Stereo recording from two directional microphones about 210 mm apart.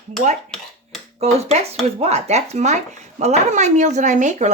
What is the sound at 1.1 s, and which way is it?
Speech, 30° right (ahead or behind).